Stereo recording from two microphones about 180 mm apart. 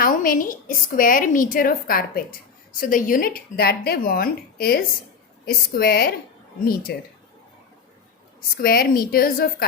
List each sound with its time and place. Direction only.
0.0 s a woman's voice: 50° left (ahead or behind)
8.6 s speech: 55° left (ahead or behind)